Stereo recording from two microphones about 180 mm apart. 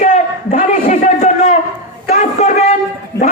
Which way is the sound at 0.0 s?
40° left (ahead or behind).